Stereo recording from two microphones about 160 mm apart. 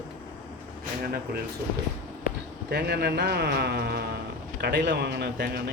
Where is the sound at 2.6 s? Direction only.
85° right.